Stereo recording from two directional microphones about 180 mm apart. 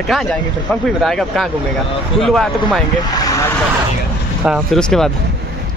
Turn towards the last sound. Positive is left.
turn(degrees=5)  # may be behind; listen again after turning